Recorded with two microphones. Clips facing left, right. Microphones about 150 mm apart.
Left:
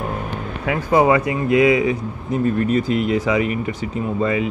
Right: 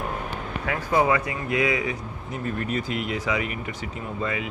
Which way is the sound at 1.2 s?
20° left (ahead or behind).